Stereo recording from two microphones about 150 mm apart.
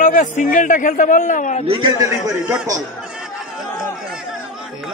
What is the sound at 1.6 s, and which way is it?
Speech, 35° right (ahead or behind).